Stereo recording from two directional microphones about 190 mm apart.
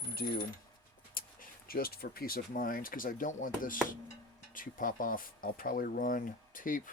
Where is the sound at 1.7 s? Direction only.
50° left (ahead or behind).